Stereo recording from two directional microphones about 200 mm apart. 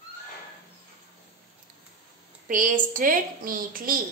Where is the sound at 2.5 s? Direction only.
40° right (ahead or behind).